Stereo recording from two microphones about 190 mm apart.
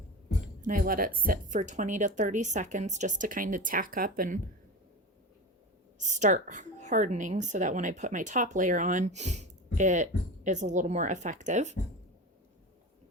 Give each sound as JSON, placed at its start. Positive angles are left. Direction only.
{"t": 0.4, "sound": "speech", "side_deg": -45}
{"t": 6.0, "sound": "a woman's voice", "side_deg": -40}